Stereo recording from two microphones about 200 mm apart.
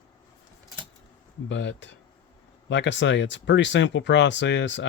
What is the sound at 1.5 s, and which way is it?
Speech, 65° left (ahead or behind).